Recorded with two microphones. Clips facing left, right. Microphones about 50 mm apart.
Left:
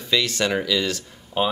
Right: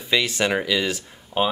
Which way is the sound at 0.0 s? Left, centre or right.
Centre.